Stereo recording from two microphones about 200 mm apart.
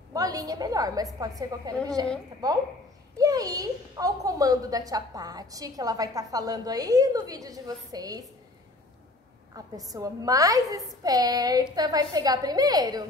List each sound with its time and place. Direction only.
0.1 s a woman's voice: 20° right (ahead or behind)
9.6 s a woman's voice: 15° right (ahead or behind)